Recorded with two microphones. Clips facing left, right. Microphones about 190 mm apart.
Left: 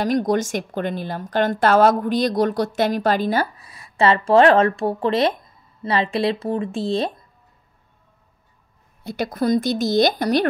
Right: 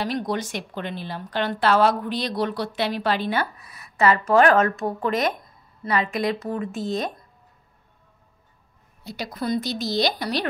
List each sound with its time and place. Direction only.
0.0 s a woman's voice: 45° left (ahead or behind); by 7.1 s 30° left (ahead or behind)
9.0 s speech: 55° left (ahead or behind)